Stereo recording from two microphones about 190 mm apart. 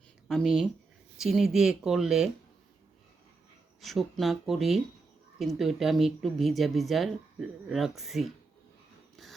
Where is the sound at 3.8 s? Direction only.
Centre (ahead or behind).